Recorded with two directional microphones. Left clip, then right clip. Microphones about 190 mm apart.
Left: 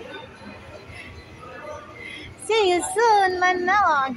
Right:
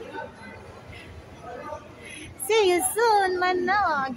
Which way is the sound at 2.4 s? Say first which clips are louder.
Left 1 dB; 20° right (ahead or behind).